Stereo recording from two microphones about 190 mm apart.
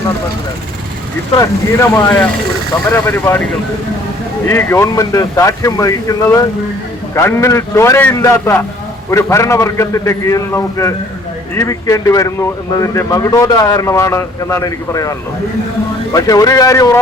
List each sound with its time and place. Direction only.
1.4 s speech: 15° left (ahead or behind)
4.4 s speech: 15° left (ahead or behind)
16.1 s speech: 20° left (ahead or behind)